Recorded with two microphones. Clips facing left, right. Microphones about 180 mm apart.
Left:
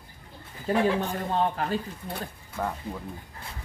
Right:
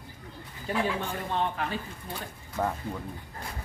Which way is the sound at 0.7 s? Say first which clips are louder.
Left 5 dB; 40° left (ahead or behind).